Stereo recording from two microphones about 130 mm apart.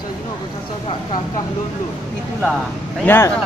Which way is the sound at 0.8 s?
35° left (ahead or behind).